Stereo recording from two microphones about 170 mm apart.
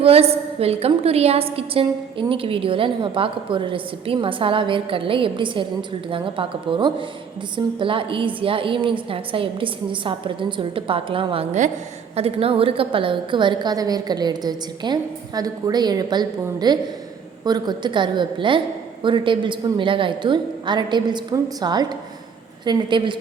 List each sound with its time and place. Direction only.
0.0 s a woman's voice: 35° right (ahead or behind)